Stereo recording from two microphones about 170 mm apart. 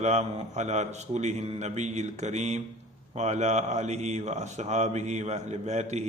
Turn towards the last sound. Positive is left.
turn(degrees=-40)  # may be behind; listen again after turning